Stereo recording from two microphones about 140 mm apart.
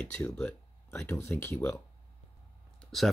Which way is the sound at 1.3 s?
15° left (ahead or behind).